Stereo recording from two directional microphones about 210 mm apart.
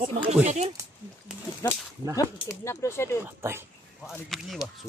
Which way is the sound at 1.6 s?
15° left (ahead or behind).